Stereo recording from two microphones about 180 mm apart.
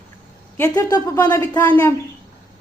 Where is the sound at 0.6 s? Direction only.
20° left (ahead or behind).